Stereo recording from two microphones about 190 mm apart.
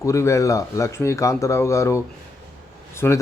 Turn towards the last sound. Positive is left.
turn(degrees=15)  # may be behind; listen again after turning